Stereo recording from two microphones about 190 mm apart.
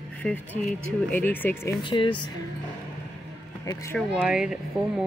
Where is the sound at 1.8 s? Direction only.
25° left (ahead or behind).